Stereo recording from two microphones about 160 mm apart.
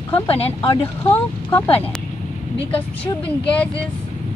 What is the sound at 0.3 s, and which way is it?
Speech, 40° left (ahead or behind).